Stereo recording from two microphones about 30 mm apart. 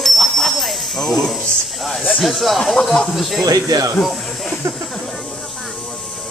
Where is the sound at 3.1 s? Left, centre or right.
Centre.